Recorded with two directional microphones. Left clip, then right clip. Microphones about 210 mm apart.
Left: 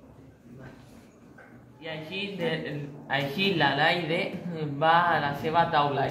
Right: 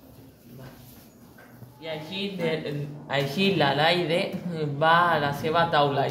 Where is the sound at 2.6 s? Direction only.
60° right (ahead or behind).